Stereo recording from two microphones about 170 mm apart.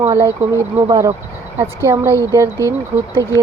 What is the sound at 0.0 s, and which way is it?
A woman's voice, 20° right (ahead or behind).